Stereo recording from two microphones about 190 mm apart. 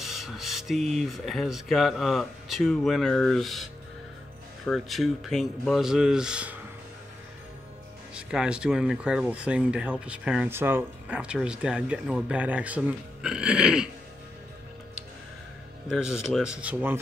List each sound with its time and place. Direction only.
0.0 s speech: centre (ahead or behind)
8.1 s speech: 5° right (ahead or behind)
15.9 s speech: 5° right (ahead or behind)